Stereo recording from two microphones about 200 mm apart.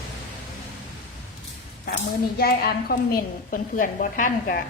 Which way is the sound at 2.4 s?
50° left (ahead or behind).